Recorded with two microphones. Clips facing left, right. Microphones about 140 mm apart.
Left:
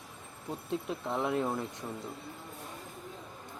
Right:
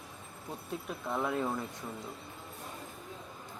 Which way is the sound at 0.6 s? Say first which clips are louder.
Left 3 dB; 20° left (ahead or behind).